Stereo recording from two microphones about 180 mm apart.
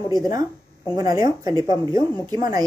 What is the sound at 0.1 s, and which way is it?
Speech, 20° right (ahead or behind).